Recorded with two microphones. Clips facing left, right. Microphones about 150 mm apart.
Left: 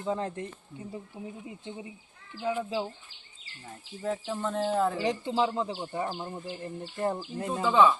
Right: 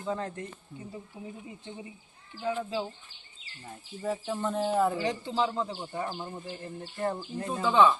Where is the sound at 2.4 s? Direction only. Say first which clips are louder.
Left 1 dB; 15° left (ahead or behind).